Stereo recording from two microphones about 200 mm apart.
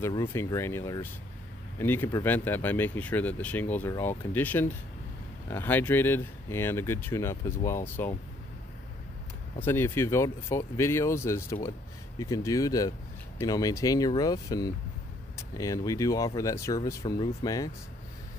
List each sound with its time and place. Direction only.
0.0 s speech: 15° left (ahead or behind)
9.6 s speech: 10° left (ahead or behind)